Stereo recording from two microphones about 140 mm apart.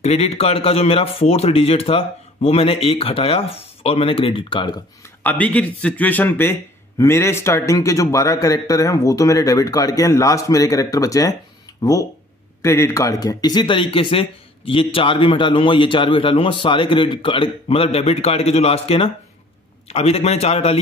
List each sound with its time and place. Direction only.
0.0 s a man's voice: 50° left (ahead or behind)
5.2 s a man's voice: 10° left (ahead or behind); by 20.8 s 45° left (ahead or behind)